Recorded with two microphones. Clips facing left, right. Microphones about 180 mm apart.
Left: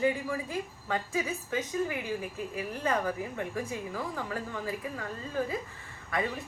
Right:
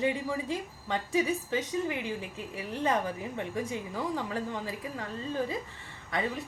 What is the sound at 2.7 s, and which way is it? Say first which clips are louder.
A woman's voice: right 1 dB; 20° right (ahead or behind).